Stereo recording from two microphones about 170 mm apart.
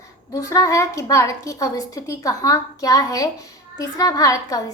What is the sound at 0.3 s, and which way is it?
A woman's voice, 20° left (ahead or behind).